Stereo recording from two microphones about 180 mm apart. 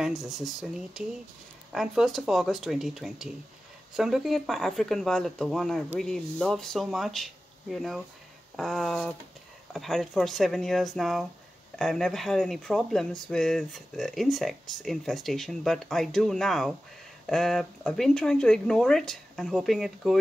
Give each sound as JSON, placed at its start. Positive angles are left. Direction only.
{"t": 0.0, "sound": "speech", "side_deg": 0}